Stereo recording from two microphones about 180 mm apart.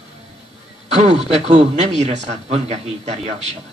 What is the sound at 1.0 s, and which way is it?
A man's voice, 40° right (ahead or behind).